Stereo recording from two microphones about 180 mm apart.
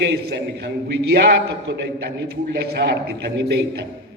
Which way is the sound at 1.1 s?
60° right (ahead or behind).